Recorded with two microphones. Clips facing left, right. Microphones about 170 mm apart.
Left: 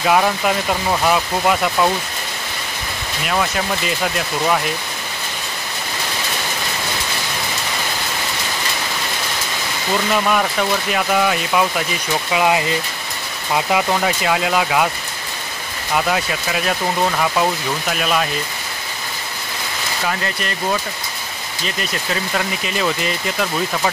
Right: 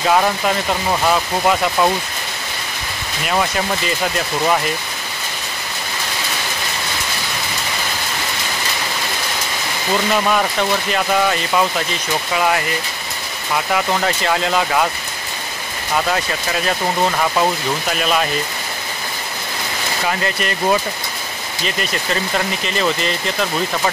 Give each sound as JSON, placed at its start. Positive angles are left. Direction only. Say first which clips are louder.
{"t": 0.0, "sound": "speech", "louder": "even", "side_deg": 5}
{"t": 3.3, "sound": "speech", "louder": "right 1 dB", "side_deg": 0}
{"t": 10.1, "sound": "speech", "louder": "left 1 dB", "side_deg": 0}
{"t": 12.3, "sound": "speech", "louder": "left 2 dB", "side_deg": 15}
{"t": 16.1, "sound": "speech", "louder": "even", "side_deg": 5}
{"t": 22.7, "sound": "speech", "louder": "right 1 dB", "side_deg": 10}